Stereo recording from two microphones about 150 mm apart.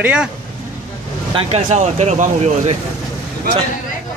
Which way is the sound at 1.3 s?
45° right (ahead or behind).